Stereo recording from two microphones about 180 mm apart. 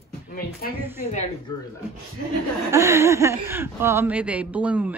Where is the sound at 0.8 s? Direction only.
10° right (ahead or behind).